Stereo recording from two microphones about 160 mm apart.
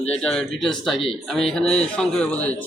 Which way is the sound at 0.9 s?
35° left (ahead or behind).